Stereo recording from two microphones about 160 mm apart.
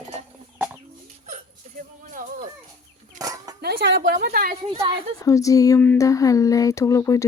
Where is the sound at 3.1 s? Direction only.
20° right (ahead or behind).